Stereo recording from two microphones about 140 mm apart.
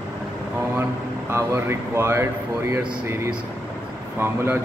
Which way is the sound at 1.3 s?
15° right (ahead or behind).